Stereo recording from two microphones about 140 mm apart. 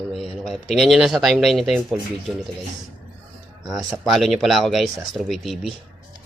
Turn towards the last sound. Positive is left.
turn(degrees=0)  # may be behind; listen again after turning